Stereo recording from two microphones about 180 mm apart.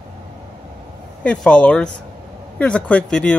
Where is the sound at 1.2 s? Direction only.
5° left (ahead or behind).